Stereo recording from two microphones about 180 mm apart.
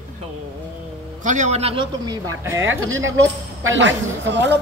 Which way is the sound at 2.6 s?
90° right.